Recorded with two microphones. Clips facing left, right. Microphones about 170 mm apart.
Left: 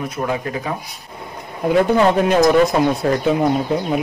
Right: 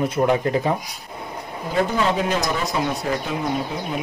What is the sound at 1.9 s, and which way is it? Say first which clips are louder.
Speech: left 7 dB; 60° left (ahead or behind).